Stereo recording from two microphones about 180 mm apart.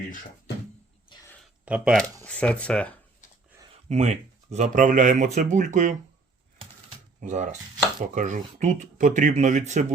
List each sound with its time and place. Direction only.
1.1 s a sound: 25° left (ahead or behind)
1.6 s speech: 5° right (ahead or behind)
2.2 s speech: 5° left (ahead or behind)
3.8 s speech: 40° right (ahead or behind)
7.2 s speech: 45° right (ahead or behind)